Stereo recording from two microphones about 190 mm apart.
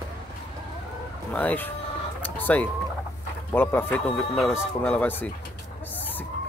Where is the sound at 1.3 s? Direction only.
10° left (ahead or behind).